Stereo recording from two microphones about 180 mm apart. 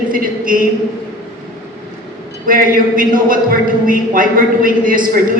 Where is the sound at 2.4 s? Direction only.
50° right (ahead or behind).